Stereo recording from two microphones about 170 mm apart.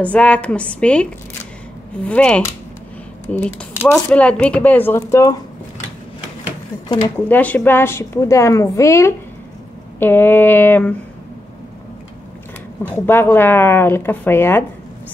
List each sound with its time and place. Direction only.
0.0 s speech: 5° left (ahead or behind)
2.0 s speech: 5° left (ahead or behind)
7.2 s speech: 10° left (ahead or behind)
12.8 s speech: 10° left (ahead or behind)